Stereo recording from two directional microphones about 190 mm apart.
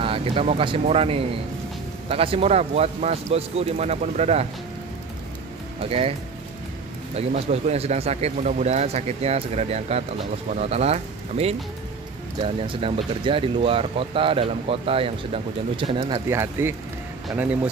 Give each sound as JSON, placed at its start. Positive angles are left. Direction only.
{"t": 0.0, "sound": "speech", "side_deg": -30}
{"t": 5.8, "sound": "speech", "side_deg": -30}
{"t": 7.2, "sound": "speech", "side_deg": -35}
{"t": 16.3, "sound": "speech", "side_deg": -15}